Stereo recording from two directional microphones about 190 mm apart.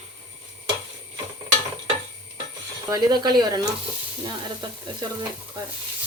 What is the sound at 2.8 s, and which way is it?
Speech, 20° right (ahead or behind).